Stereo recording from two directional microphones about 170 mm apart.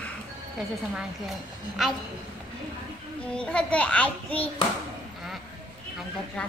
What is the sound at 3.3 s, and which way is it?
A child's voice, 5° left (ahead or behind).